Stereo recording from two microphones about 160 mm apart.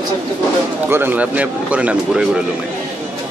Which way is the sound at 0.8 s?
15° right (ahead or behind).